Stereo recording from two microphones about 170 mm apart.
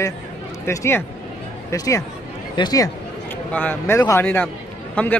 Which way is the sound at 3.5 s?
10° left (ahead or behind).